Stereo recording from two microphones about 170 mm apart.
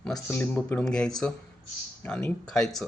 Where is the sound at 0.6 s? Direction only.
5° left (ahead or behind).